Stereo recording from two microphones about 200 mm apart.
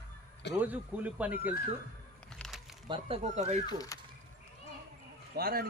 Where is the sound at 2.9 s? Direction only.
30° right (ahead or behind).